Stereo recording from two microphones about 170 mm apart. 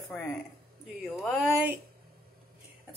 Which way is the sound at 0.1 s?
5° left (ahead or behind).